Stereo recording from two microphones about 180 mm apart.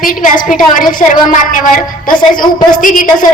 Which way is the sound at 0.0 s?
50° left (ahead or behind).